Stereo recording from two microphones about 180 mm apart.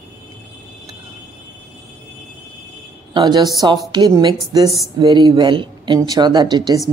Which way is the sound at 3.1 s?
25° right (ahead or behind).